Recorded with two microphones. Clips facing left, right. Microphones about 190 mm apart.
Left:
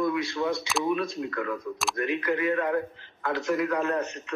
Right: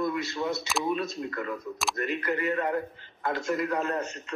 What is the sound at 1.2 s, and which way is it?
Speech, 10° right (ahead or behind).